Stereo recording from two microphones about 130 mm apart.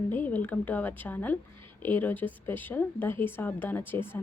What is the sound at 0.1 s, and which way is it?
Speech, 15° left (ahead or behind).